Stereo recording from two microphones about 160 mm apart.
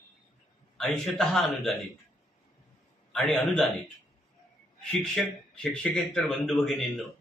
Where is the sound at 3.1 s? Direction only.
5° left (ahead or behind).